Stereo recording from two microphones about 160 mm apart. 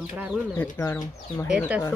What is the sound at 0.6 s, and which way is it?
Speech, 15° left (ahead or behind).